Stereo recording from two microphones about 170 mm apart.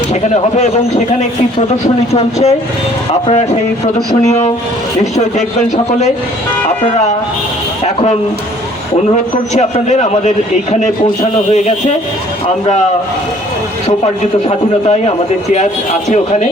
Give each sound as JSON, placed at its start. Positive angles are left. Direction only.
{"t": 0.1, "sound": "a man's voice", "side_deg": 40}
{"t": 6.7, "sound": "speech", "side_deg": 40}
{"t": 9.1, "sound": "a man's voice", "side_deg": 40}
{"t": 13.8, "sound": "a man's voice", "side_deg": 35}